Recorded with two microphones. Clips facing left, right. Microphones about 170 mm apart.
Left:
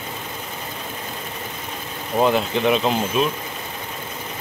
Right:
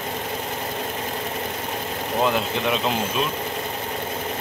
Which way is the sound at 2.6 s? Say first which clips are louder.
Left 5 dB; centre (ahead or behind).